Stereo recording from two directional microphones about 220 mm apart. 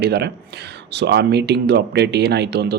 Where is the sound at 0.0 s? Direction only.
50° right (ahead or behind).